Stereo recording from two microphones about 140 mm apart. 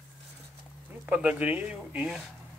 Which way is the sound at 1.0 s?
10° right (ahead or behind).